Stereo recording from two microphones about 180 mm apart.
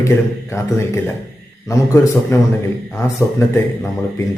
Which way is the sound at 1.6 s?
15° left (ahead or behind).